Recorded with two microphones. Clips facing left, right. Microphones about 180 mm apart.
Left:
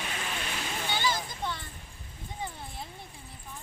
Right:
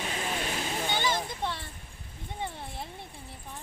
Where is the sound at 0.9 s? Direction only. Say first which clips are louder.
Even; 20° right (ahead or behind).